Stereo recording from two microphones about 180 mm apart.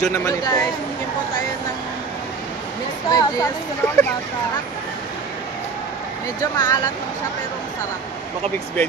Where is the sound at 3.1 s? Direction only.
20° left (ahead or behind).